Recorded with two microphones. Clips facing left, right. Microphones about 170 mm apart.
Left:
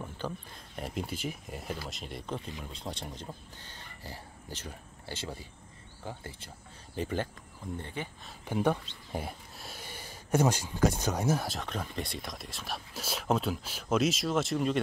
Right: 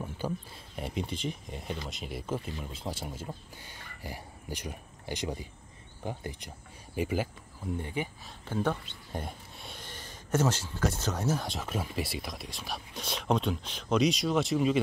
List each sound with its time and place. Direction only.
0.2 s speech: 10° right (ahead or behind)
8.5 s speech: 15° left (ahead or behind)